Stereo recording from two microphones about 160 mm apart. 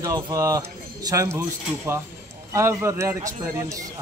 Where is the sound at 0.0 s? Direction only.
20° right (ahead or behind).